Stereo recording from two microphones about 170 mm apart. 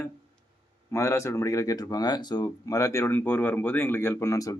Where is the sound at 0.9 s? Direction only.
15° left (ahead or behind).